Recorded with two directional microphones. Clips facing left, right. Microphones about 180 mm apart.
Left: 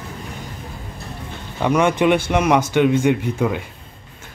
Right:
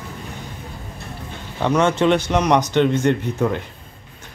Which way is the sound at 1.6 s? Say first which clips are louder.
Left 1 dB; 10° left (ahead or behind).